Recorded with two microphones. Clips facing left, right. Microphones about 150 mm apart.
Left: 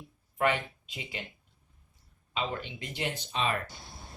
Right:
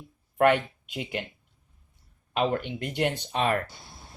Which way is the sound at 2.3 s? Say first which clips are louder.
Right 8 dB; 60° right (ahead or behind).